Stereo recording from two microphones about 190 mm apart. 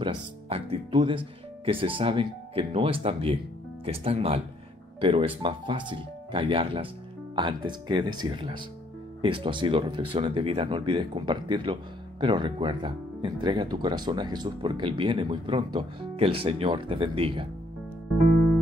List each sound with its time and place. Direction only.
0.0 s music: 25° right (ahead or behind)
1.7 s speech: 30° right (ahead or behind)